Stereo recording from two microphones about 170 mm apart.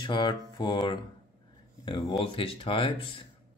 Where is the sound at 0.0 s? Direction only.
25° left (ahead or behind).